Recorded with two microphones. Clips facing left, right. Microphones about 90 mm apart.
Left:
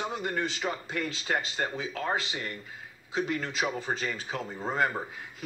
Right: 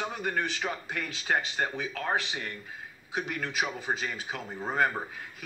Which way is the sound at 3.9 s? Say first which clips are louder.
Right 1 dB; 10° right (ahead or behind).